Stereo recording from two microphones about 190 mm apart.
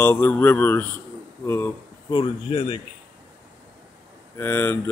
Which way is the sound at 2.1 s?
25° left (ahead or behind).